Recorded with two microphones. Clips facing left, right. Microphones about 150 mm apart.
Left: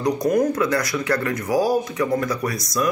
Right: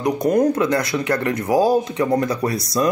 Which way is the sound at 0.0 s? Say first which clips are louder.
Right 2 dB; 25° right (ahead or behind).